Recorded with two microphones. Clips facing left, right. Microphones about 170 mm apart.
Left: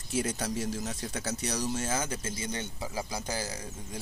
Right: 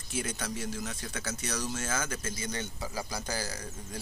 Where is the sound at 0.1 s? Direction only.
35° left (ahead or behind); by 3.5 s 20° left (ahead or behind).